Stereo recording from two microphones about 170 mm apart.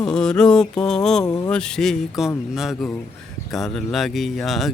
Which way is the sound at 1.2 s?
20° left (ahead or behind).